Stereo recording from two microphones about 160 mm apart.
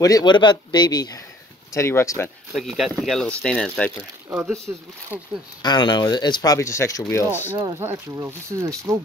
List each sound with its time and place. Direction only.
0.0 s speech: 25° left (ahead or behind)
2.5 s speech: centre (ahead or behind)
4.3 s speech: 5° right (ahead or behind)
5.6 s speech: 25° left (ahead or behind)
7.8 s speech: 15° right (ahead or behind)